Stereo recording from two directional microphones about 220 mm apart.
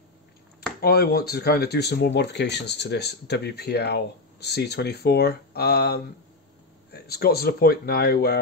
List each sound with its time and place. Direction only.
0.7 s speech: 45° left (ahead or behind)